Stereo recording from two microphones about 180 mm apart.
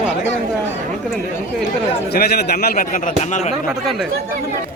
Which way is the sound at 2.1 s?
60° left (ahead or behind).